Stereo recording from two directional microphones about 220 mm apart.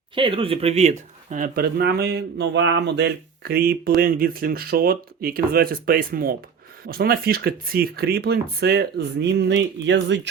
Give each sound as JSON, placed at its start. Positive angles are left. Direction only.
{"t": 0.1, "sound": "speech", "side_deg": -25}